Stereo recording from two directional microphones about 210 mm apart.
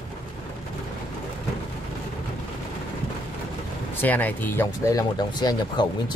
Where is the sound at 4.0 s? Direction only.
10° left (ahead or behind).